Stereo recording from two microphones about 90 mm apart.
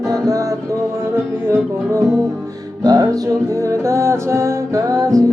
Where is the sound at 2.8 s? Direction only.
50° right (ahead or behind).